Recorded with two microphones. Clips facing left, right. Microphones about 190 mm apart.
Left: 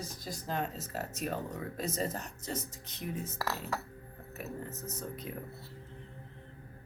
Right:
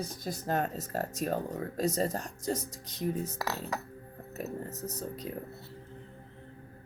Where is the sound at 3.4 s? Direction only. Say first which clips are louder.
Right 1 dB; 15° right (ahead or behind).